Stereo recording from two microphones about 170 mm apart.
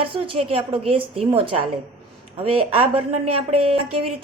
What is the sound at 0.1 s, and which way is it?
A woman's voice, 35° right (ahead or behind).